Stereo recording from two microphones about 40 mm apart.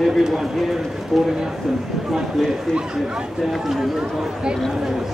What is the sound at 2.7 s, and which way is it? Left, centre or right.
Speech, right.